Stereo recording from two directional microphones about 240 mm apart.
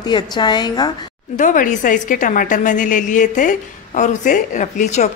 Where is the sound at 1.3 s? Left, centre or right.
Left.